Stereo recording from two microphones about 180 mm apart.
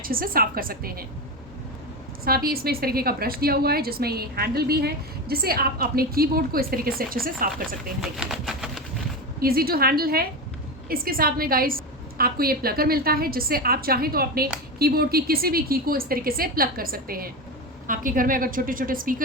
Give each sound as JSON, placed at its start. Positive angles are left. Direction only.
{"t": 0.0, "sound": "a woman's voice", "side_deg": -55}
{"t": 2.2, "sound": "a woman's voice", "side_deg": -55}
{"t": 8.0, "sound": "pigeon", "side_deg": 0}
{"t": 9.4, "sound": "a woman's voice", "side_deg": -55}